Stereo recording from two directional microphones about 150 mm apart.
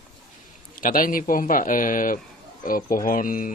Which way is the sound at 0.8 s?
65° left (ahead or behind).